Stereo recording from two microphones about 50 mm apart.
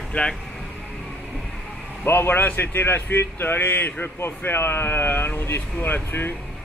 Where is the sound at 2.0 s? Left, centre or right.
Left.